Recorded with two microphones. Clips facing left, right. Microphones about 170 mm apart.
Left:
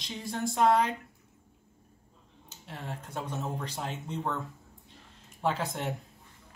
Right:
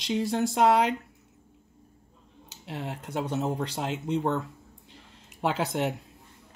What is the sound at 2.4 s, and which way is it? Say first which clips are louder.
Speech: right 6 dB; 80° right.